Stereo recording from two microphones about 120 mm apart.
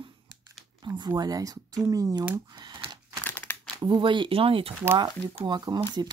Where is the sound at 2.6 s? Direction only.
40° right (ahead or behind).